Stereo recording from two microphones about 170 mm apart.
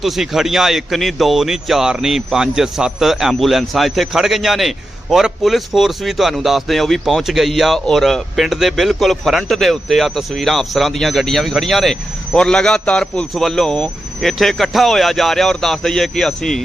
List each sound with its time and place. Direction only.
0.0 s speech: centre (ahead or behind)